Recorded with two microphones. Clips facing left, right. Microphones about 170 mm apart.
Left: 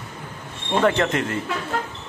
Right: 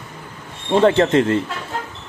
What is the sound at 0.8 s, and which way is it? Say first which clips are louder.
Speech: right 6 dB; 25° right (ahead or behind).